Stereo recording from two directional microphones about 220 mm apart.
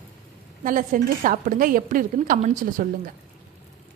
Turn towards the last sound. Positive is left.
turn(degrees=-35)  # may be behind; listen again after turning